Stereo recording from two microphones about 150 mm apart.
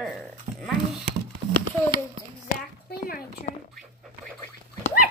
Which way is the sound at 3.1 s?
75° left (ahead or behind).